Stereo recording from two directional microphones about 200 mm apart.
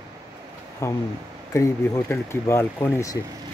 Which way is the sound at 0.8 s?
15° left (ahead or behind).